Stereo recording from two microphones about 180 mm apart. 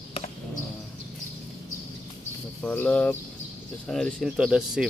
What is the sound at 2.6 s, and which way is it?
Speech, 10° left (ahead or behind).